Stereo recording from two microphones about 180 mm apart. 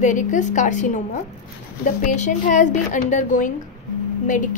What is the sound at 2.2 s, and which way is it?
A woman's voice, 40° left (ahead or behind).